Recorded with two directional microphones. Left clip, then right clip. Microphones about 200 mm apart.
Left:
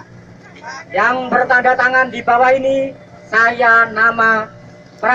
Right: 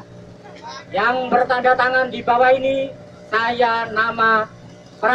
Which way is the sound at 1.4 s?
Centre (ahead or behind).